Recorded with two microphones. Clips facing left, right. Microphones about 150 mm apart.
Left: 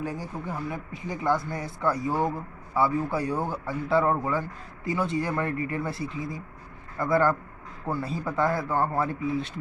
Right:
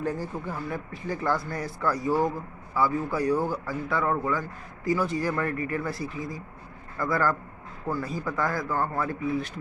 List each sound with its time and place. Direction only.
0.0 s a man's voice: 10° left (ahead or behind)